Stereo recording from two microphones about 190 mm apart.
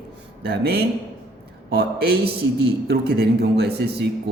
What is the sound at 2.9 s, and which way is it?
A man's voice, 60° right (ahead or behind).